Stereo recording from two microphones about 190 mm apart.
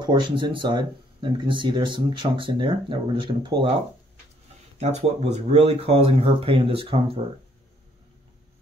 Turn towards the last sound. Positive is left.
turn(degrees=-30)  # may be behind; listen again after turning